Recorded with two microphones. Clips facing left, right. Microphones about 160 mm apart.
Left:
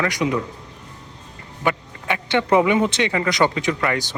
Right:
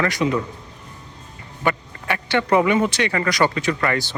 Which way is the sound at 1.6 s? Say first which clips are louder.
Even; 15° left (ahead or behind).